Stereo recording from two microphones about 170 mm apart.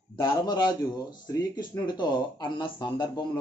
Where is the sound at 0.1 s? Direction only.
25° left (ahead or behind).